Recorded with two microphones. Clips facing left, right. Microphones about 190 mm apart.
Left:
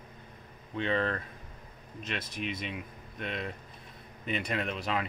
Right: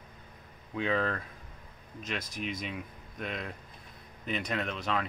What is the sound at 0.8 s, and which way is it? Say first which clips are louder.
Speech: even; centre (ahead or behind).